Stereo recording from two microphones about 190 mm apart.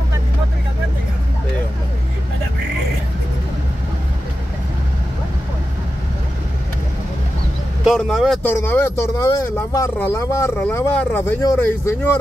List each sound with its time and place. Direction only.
7.8 s speech: centre (ahead or behind)
8.5 s speech: 10° left (ahead or behind)